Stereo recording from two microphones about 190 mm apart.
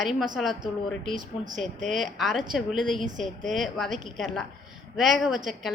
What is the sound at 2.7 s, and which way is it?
Speech, 45° right (ahead or behind).